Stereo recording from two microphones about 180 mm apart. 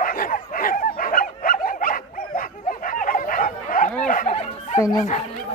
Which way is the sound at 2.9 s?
50° left (ahead or behind).